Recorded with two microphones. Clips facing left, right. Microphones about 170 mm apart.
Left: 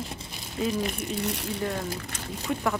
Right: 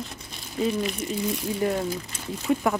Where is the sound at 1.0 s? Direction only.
70° left (ahead or behind).